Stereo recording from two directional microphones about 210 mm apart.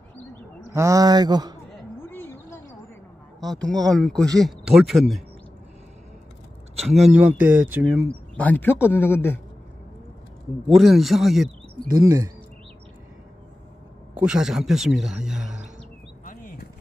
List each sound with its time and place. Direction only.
0.7 s speech: 15° right (ahead or behind)
2.0 s a sound: 10° left (ahead or behind)
3.4 s speech: centre (ahead or behind)
6.9 s speech: 5° right (ahead or behind)
8.4 s speech: 10° left (ahead or behind)
10.7 s speech: centre (ahead or behind)
14.2 s speech: centre (ahead or behind)
16.3 s a sound: 40° left (ahead or behind)